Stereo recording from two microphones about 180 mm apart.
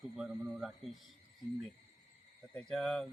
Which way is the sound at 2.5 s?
Centre (ahead or behind).